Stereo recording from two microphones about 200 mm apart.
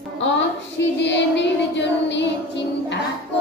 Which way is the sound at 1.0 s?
65° left (ahead or behind).